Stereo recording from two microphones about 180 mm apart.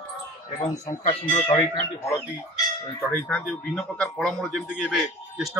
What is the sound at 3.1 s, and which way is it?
Speech, 10° left (ahead or behind).